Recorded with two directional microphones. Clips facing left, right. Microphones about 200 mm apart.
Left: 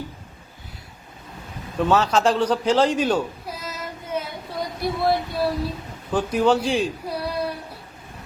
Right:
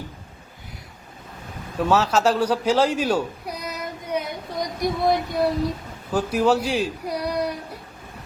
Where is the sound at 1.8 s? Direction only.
5° right (ahead or behind).